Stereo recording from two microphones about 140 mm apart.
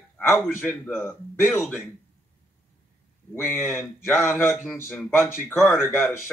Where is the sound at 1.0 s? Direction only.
20° left (ahead or behind).